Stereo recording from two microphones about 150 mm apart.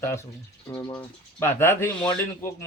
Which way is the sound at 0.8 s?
30° left (ahead or behind).